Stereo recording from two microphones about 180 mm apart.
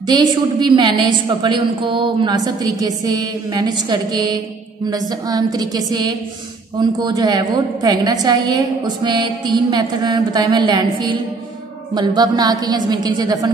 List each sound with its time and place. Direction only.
0.1 s a woman's voice: 25° right (ahead or behind)